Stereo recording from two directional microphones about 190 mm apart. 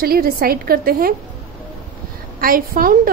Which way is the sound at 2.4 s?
50° right (ahead or behind).